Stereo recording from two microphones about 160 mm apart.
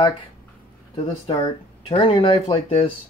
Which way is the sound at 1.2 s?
35° left (ahead or behind).